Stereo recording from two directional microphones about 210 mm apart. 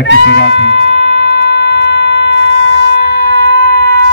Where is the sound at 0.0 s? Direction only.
55° left (ahead or behind).